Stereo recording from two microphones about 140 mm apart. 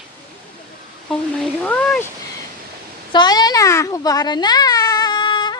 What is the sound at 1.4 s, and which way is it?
Speech, 5° left (ahead or behind).